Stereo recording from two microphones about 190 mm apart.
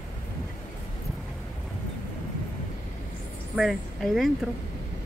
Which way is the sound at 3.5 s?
Centre (ahead or behind).